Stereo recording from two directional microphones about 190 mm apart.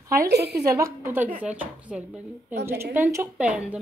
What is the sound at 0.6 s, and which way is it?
Speech, 15° right (ahead or behind).